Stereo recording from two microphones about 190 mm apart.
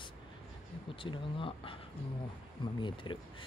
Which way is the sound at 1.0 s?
25° left (ahead or behind).